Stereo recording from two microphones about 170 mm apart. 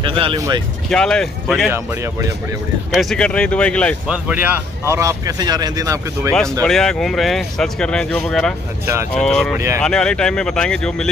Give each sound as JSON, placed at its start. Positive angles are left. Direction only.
{"t": 0.0, "sound": "speech", "side_deg": -30}
{"t": 0.8, "sound": "speech", "side_deg": 5}
{"t": 1.7, "sound": "speech", "side_deg": -15}
{"t": 2.9, "sound": "speech", "side_deg": 0}
{"t": 4.1, "sound": "speech", "side_deg": -10}
{"t": 6.6, "sound": "speech", "side_deg": 5}